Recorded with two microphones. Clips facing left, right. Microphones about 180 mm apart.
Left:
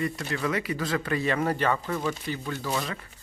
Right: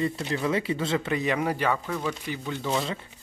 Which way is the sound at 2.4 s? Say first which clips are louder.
Right 4 dB; 15° right (ahead or behind).